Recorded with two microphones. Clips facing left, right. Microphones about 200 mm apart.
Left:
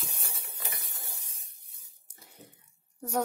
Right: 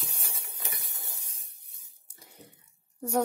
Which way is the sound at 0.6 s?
15° right (ahead or behind).